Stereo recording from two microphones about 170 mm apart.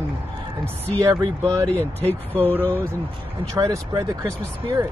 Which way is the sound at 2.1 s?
10° left (ahead or behind).